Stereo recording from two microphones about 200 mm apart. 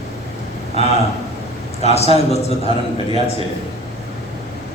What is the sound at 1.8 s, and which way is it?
Speech, 30° left (ahead or behind).